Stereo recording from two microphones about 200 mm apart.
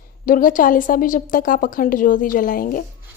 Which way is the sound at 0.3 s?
45° left (ahead or behind).